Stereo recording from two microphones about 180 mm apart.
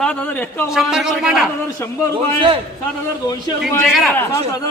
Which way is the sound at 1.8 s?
15° left (ahead or behind).